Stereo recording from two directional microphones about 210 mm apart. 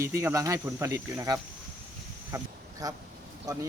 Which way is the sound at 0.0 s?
15° right (ahead or behind).